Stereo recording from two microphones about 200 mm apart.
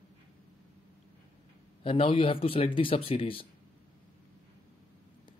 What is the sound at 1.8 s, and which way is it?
Speech, 25° left (ahead or behind).